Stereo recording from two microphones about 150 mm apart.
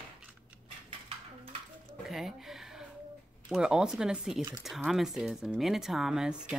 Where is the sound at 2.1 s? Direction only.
Centre (ahead or behind).